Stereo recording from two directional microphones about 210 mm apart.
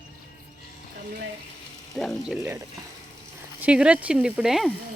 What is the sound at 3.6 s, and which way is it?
Speech, 5° right (ahead or behind).